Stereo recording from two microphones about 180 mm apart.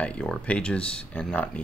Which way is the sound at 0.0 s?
5° left (ahead or behind).